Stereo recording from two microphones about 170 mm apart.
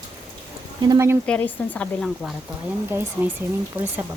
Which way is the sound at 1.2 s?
5° left (ahead or behind).